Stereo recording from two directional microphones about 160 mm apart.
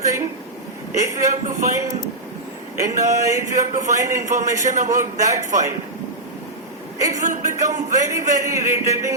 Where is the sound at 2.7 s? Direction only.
20° right (ahead or behind).